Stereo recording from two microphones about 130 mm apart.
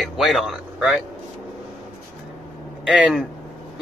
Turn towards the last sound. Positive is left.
turn(degrees=-5)  # may be behind; listen again after turning